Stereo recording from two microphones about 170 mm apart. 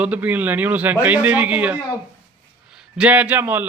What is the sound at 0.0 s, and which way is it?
A man's voice, 10° right (ahead or behind).